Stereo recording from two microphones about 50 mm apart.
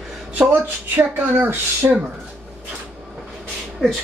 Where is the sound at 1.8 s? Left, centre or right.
Right.